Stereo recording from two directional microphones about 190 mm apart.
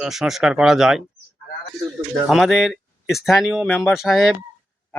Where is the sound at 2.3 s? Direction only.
Centre (ahead or behind).